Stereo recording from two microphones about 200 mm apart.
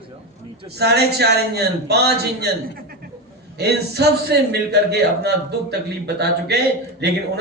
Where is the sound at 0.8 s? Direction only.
55° right (ahead or behind).